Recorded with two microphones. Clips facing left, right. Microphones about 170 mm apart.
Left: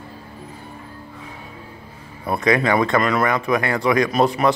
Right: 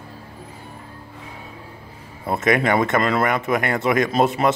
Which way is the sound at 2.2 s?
25° right (ahead or behind).